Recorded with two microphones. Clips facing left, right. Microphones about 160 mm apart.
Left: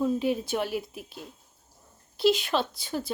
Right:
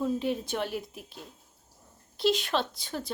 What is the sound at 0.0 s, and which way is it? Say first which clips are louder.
A woman's voice: left 3 dB; 5° left (ahead or behind).